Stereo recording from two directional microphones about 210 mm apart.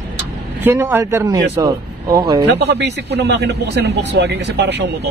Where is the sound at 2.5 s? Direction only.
55° right (ahead or behind).